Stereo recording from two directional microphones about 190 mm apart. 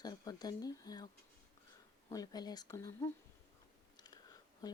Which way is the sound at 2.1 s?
20° left (ahead or behind).